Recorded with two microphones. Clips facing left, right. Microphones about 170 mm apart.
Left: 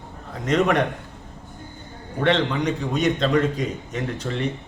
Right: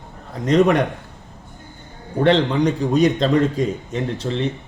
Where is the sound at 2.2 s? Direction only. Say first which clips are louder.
Right 5 dB; 35° right (ahead or behind).